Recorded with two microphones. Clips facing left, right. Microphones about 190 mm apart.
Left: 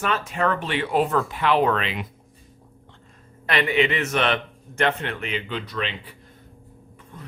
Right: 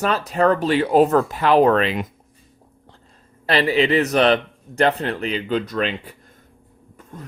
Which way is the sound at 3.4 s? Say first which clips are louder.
Right 4 dB; 35° right (ahead or behind).